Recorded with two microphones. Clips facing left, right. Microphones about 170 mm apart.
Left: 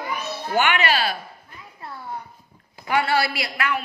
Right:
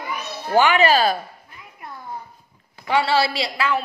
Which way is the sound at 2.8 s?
30° right (ahead or behind).